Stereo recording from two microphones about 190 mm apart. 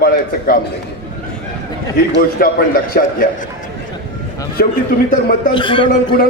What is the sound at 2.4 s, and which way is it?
Speech, 50° left (ahead or behind).